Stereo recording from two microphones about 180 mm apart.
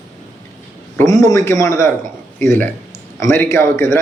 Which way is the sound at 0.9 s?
15° left (ahead or behind).